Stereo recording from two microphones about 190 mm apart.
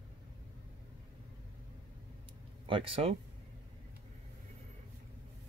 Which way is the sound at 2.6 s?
30° right (ahead or behind).